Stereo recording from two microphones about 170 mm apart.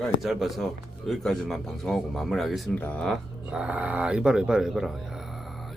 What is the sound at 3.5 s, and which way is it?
Speech, 5° right (ahead or behind).